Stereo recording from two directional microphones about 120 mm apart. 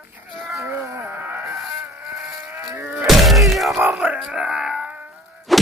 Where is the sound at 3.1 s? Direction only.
Centre (ahead or behind).